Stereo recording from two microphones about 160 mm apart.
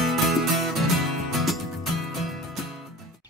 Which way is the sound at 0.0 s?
Centre (ahead or behind).